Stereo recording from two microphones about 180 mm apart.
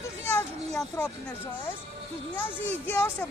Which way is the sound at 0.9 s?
15° left (ahead or behind).